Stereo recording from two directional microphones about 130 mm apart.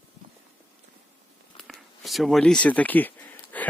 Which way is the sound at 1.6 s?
Centre (ahead or behind).